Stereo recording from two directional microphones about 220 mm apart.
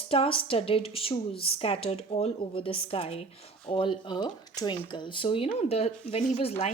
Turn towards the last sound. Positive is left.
turn(degrees=25)  # may be behind; listen again after turning